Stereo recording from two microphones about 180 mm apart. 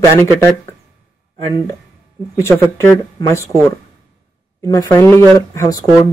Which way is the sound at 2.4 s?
15° left (ahead or behind).